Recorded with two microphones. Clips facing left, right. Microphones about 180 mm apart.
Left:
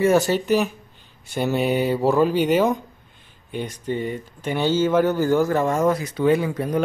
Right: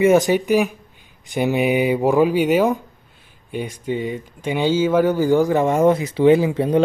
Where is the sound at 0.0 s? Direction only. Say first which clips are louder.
Right 3 dB; 20° right (ahead or behind).